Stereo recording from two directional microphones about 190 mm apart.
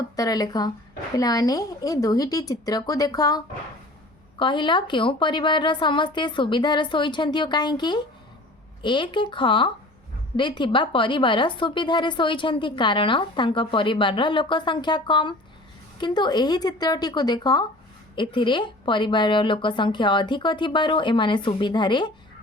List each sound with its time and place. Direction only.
0.2 s speech: 20° left (ahead or behind)